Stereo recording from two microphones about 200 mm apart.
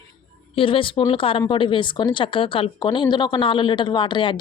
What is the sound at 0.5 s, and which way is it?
Speech, 25° left (ahead or behind).